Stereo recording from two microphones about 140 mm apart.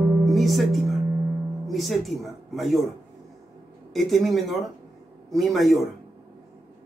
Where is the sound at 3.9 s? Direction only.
Centre (ahead or behind).